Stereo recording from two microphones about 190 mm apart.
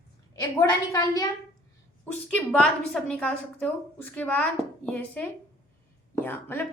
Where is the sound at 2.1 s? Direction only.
5° left (ahead or behind).